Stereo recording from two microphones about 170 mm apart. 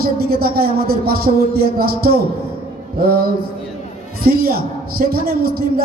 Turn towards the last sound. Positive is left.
turn(degrees=-65)  # may be behind; listen again after turning